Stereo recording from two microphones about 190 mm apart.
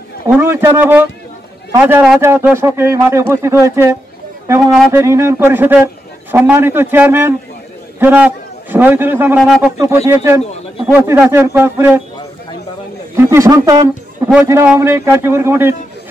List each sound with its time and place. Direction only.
0.3 s speech: 10° right (ahead or behind)
4.6 s speech: centre (ahead or behind)
4.9 s a man's voice: 15° right (ahead or behind)
10.0 s speech: 15° right (ahead or behind)
13.1 s a man's voice: 15° right (ahead or behind)